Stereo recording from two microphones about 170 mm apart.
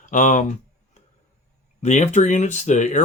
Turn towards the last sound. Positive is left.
turn(degrees=45)  # may be behind; listen again after turning